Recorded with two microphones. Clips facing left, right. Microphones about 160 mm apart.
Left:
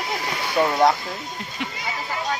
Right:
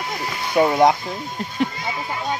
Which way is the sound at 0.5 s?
15° right (ahead or behind).